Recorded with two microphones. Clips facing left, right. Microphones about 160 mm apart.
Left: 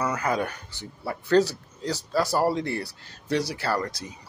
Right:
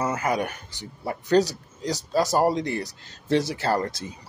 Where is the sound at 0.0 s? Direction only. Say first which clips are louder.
Right 1 dB; 25° right (ahead or behind).